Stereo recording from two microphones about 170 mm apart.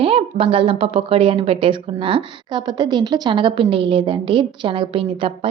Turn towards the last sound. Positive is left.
turn(degrees=-30)  # may be behind; listen again after turning